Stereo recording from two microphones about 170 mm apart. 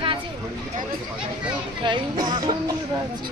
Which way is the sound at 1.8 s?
25° right (ahead or behind).